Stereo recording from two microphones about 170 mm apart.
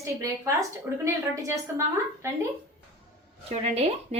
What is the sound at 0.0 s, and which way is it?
Speech, 15° right (ahead or behind).